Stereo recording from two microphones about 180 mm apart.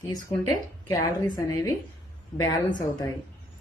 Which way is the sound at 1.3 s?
20° left (ahead or behind).